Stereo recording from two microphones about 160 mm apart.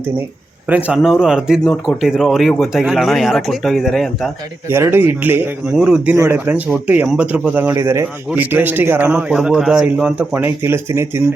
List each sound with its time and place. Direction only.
0.7 s speech: 10° right (ahead or behind)
4.7 s speech: 15° right (ahead or behind)